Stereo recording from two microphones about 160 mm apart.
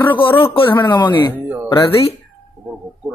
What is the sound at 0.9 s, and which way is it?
Speech, 30° left (ahead or behind).